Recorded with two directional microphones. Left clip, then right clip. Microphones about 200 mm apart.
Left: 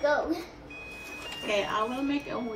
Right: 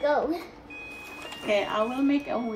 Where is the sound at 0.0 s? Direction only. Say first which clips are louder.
Right 2 dB; 50° right (ahead or behind).